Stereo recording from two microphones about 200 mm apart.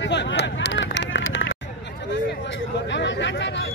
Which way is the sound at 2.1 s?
60° left (ahead or behind).